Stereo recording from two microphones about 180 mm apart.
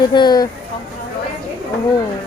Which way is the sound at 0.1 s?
25° left (ahead or behind).